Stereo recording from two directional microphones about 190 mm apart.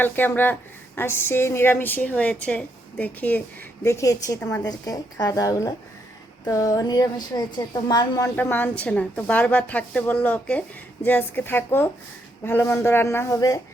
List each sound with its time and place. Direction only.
0.0 s a woman's voice: 10° left (ahead or behind)